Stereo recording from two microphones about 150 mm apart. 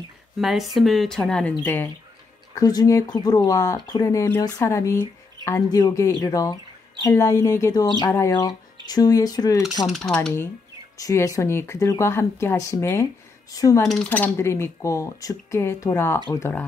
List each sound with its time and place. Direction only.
0.4 s speech: centre (ahead or behind)
2.5 s speech: 25° left (ahead or behind)
9.8 s speech: centre (ahead or behind)
11.0 s speech: 20° left (ahead or behind)
13.8 s speech: 5° left (ahead or behind)